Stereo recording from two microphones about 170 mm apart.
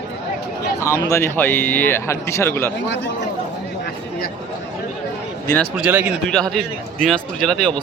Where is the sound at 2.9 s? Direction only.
90° left.